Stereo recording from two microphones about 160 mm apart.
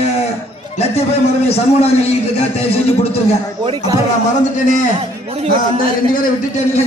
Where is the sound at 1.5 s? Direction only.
40° left (ahead or behind).